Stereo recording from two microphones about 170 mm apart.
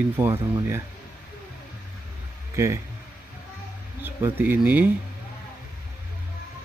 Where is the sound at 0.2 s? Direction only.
15° right (ahead or behind).